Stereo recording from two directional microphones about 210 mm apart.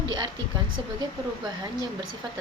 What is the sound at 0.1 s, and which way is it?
Speech, 20° right (ahead or behind).